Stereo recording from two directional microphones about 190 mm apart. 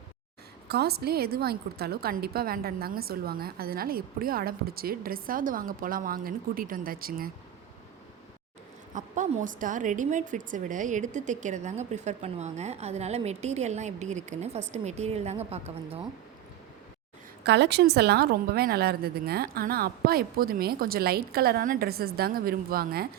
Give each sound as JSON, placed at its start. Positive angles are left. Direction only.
{"t": 0.7, "sound": "a woman's voice", "side_deg": -55}
{"t": 9.0, "sound": "a woman's voice", "side_deg": -40}
{"t": 17.4, "sound": "a woman's voice", "side_deg": -65}